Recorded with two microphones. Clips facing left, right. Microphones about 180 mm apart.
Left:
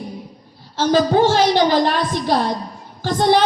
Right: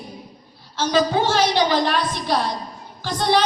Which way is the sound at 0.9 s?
40° left (ahead or behind).